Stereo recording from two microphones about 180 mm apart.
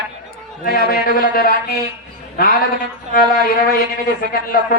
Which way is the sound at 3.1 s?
55° left (ahead or behind).